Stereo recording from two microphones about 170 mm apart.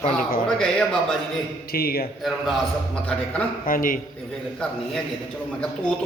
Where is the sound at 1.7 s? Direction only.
65° left (ahead or behind).